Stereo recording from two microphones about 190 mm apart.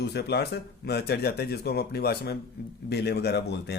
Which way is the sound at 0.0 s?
60° left (ahead or behind).